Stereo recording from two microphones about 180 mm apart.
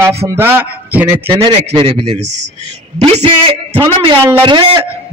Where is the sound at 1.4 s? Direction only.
30° right (ahead or behind).